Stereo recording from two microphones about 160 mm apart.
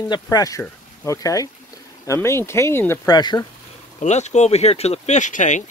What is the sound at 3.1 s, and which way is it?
Speech, 25° left (ahead or behind).